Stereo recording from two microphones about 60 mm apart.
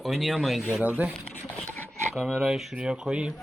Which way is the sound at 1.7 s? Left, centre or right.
Left.